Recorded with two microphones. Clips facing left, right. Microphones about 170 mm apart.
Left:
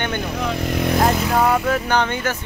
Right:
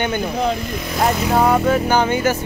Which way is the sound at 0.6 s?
70° left (ahead or behind).